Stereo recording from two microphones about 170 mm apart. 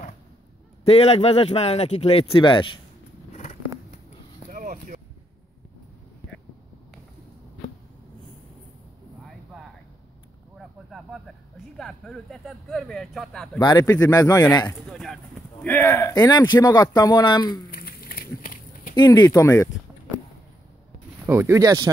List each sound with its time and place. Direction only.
0.8 s a man's voice: 35° left (ahead or behind)
4.5 s a sound: 50° right (ahead or behind)
10.9 s speech: centre (ahead or behind)
13.6 s speech: 20° left (ahead or behind)
14.9 s speech: centre (ahead or behind); by 17.6 s 25° left (ahead or behind)
17.6 s a sound: 60° left (ahead or behind)
18.9 s speech: 25° left (ahead or behind)
21.3 s speech: 15° right (ahead or behind)